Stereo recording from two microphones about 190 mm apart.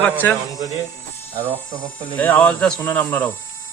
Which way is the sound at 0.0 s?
10° left (ahead or behind).